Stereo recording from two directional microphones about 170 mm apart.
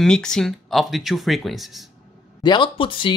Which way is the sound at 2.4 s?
25° left (ahead or behind).